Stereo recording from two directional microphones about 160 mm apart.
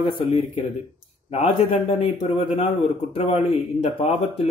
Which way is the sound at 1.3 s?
40° left (ahead or behind).